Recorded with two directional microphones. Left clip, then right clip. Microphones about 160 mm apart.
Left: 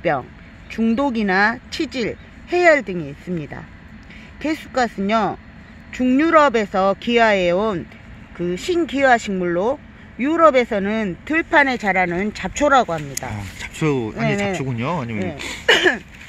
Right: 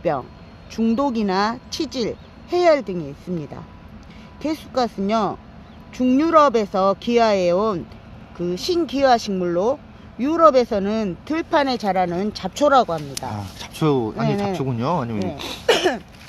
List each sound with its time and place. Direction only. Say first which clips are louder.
0.0 s speech: left 2 dB; 40° left (ahead or behind)
13.3 s speech: left 1 dB; 5° left (ahead or behind)
14.2 s speech: left 2 dB; 40° left (ahead or behind)
14.6 s speech: right 2 dB; 5° left (ahead or behind)
15.6 s speech: left 3 dB; 45° left (ahead or behind)